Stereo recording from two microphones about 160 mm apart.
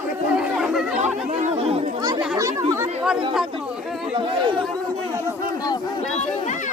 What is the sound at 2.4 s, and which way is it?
Chatter, 20° right (ahead or behind).